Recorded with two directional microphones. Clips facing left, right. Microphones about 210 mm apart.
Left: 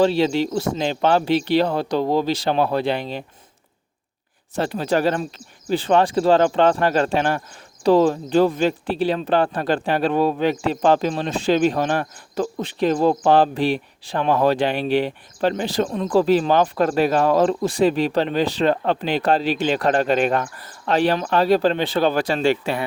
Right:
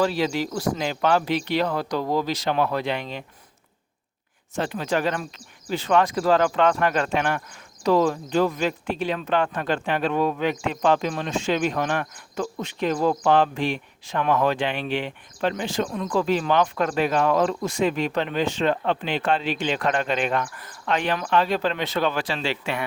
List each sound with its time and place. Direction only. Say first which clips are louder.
0.0 s speech: left 5 dB; 30° left (ahead or behind)
4.5 s speech: left 4 dB; 35° left (ahead or behind)